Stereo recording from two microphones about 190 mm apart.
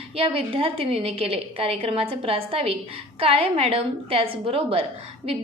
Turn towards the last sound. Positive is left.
turn(degrees=-30)  # may be behind; listen again after turning